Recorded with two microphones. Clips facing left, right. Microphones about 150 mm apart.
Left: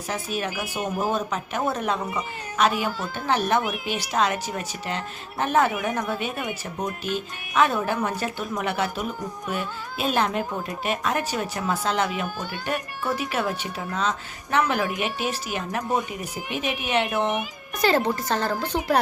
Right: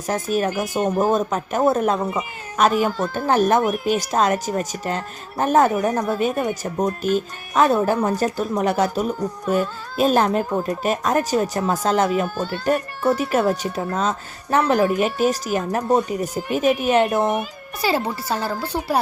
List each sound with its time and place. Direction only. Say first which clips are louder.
0.1 s speech: right 8 dB; 45° right (ahead or behind)
17.8 s a woman's voice: even; 5° right (ahead or behind)